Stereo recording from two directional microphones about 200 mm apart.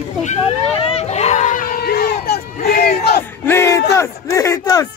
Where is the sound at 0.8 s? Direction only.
30° left (ahead or behind); by 3.2 s 50° left (ahead or behind).